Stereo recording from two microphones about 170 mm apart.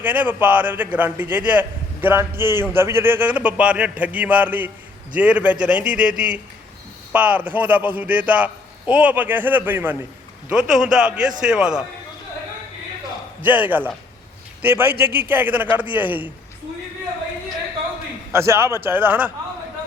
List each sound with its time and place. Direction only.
0.0 s a man's voice: 10° right (ahead or behind)
13.4 s a man's voice: 10° right (ahead or behind)
18.3 s a man's voice: 15° right (ahead or behind)